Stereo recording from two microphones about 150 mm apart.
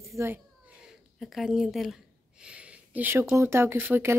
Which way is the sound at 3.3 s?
15° right (ahead or behind).